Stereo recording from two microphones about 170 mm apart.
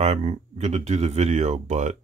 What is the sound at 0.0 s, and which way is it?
Speech, 40° right (ahead or behind).